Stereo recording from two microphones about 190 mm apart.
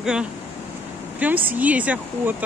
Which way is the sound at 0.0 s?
5° right (ahead or behind).